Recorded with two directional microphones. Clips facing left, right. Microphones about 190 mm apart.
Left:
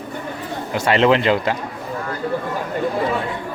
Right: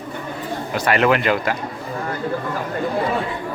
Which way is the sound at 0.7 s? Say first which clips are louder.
Left 2 dB; 25° left (ahead or behind).